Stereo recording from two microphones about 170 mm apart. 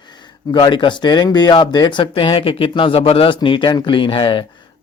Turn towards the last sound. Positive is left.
turn(degrees=30)  # may be behind; listen again after turning